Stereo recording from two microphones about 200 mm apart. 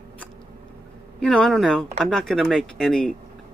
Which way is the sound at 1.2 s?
Centre (ahead or behind).